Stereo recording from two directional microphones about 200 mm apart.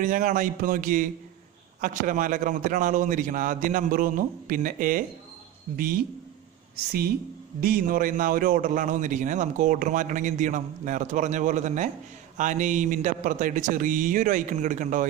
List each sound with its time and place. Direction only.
0.0 s a man's voice: 40° right (ahead or behind)